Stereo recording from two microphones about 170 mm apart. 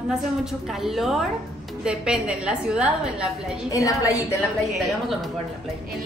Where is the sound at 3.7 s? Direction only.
20° left (ahead or behind).